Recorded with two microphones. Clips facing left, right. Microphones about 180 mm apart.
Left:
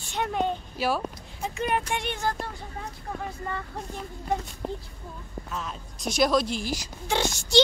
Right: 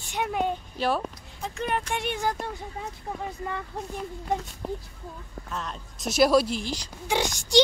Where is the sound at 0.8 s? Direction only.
5° left (ahead or behind).